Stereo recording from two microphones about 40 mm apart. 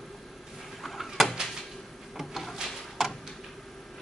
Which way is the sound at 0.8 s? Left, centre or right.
Centre.